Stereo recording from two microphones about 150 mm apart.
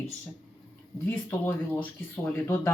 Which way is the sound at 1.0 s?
15° left (ahead or behind).